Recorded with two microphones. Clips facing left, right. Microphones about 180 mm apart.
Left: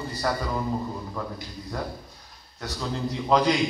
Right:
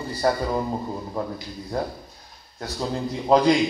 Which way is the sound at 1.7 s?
35° right (ahead or behind).